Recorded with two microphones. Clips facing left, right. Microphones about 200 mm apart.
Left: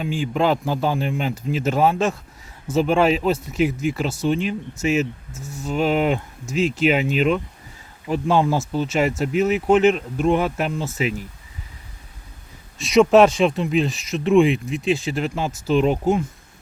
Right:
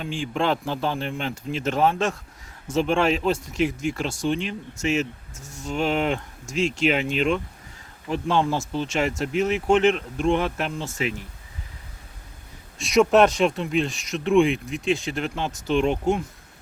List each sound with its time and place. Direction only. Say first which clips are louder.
0.0 s speech: left 4 dB; 5° left (ahead or behind)
12.8 s speech: left 4 dB; centre (ahead or behind)